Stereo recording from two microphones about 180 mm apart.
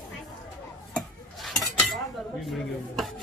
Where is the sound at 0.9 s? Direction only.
Centre (ahead or behind).